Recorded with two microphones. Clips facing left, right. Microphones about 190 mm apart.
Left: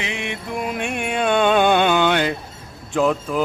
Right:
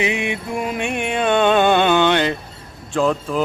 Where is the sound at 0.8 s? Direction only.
5° left (ahead or behind).